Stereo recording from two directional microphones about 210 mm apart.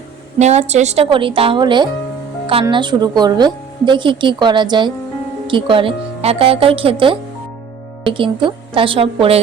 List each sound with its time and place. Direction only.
0.3 s a woman's voice: 30° right (ahead or behind)